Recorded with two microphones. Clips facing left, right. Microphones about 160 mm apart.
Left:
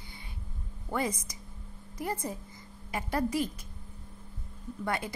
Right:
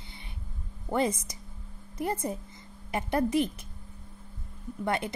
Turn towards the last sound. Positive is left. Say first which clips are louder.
# right 3 dB
turn(degrees=-25)  # may be behind; listen again after turning